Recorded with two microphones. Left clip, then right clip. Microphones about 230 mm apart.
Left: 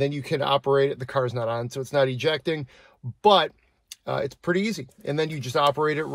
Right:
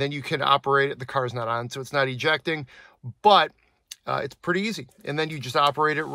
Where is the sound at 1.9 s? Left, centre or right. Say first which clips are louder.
Even; right.